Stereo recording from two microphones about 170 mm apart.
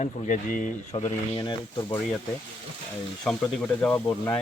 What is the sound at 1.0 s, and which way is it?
Speech, 30° left (ahead or behind).